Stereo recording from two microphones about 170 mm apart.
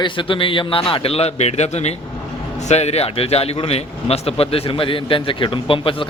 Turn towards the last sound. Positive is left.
turn(degrees=30)  # may be behind; listen again after turning